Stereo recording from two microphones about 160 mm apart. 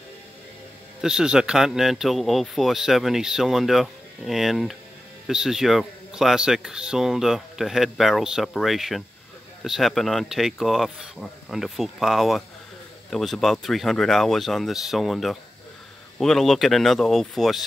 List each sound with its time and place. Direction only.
1.0 s speech: 5° right (ahead or behind)